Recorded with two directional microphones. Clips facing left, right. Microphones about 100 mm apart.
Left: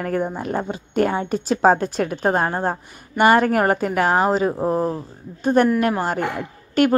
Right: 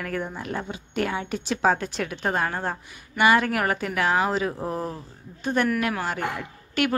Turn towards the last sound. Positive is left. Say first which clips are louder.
# left 8 dB
turn(degrees=40)  # may be behind; listen again after turning